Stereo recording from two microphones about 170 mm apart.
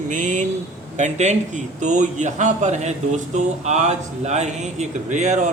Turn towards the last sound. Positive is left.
turn(degrees=-45)  # may be behind; listen again after turning